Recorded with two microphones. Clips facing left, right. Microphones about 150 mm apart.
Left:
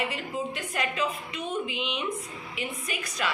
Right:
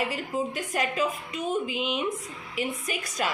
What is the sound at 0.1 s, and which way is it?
A woman's voice, 45° right (ahead or behind).